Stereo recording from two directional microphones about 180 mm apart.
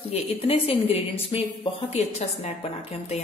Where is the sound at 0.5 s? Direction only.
35° left (ahead or behind).